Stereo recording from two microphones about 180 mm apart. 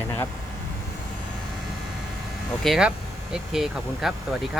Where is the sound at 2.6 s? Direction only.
Centre (ahead or behind).